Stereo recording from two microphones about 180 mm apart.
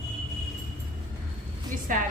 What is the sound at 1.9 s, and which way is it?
Speech, 45° right (ahead or behind).